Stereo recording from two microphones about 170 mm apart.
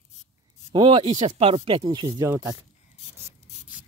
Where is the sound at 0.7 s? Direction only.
30° right (ahead or behind).